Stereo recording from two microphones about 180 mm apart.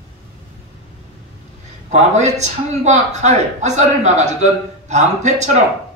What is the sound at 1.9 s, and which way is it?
A man's voice, 40° right (ahead or behind).